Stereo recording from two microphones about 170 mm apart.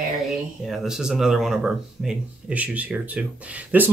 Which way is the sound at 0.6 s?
Centre (ahead or behind).